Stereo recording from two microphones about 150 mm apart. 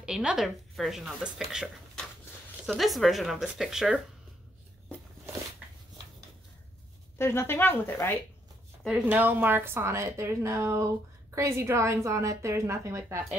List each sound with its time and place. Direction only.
0.0 s speech: 5° right (ahead or behind)
7.2 s speech: 15° left (ahead or behind)
8.8 s a woman's voice: 10° right (ahead or behind)